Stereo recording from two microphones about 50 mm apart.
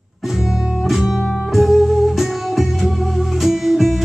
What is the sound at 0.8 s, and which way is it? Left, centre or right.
Music, centre.